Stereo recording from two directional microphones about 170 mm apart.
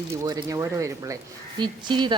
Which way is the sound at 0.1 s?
20° right (ahead or behind).